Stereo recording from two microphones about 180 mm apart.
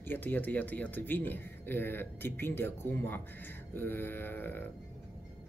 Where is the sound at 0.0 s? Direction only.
10° left (ahead or behind).